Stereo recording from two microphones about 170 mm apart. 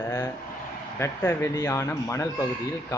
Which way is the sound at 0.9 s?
15° left (ahead or behind).